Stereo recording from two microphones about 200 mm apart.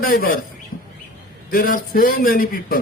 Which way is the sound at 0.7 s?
40° left (ahead or behind).